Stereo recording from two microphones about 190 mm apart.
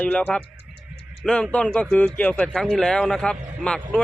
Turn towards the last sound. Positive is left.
turn(degrees=5)  # may be behind; listen again after turning